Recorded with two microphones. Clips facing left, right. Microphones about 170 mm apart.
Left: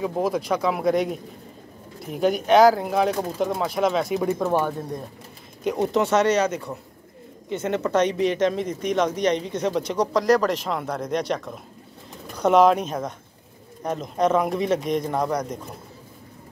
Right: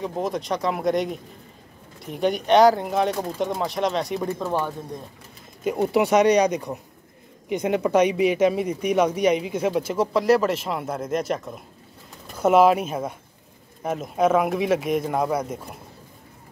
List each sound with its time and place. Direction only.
0.0 s speech: 5° left (ahead or behind)
4.3 s speech: 15° left (ahead or behind)
5.6 s speech: 5° right (ahead or behind)